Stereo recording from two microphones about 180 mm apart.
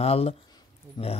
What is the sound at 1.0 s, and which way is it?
Speech, 25° left (ahead or behind).